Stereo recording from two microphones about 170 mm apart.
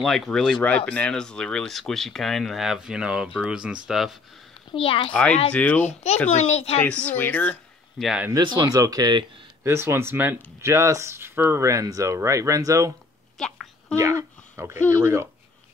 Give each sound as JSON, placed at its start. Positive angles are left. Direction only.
{"t": 0.0, "sound": "speech", "side_deg": 5}
{"t": 4.6, "sound": "a child's voice", "side_deg": 30}
{"t": 5.5, "sound": "speech", "side_deg": 10}
{"t": 6.3, "sound": "speech", "side_deg": 40}
{"t": 6.8, "sound": "speech", "side_deg": 10}
{"t": 8.0, "sound": "speech", "side_deg": -5}
{"t": 8.3, "sound": "speech", "side_deg": -25}
{"t": 13.4, "sound": "a sound", "side_deg": 5}
{"t": 13.9, "sound": "speech", "side_deg": -15}